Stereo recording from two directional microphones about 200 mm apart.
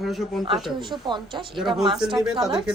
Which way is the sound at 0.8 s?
25° right (ahead or behind).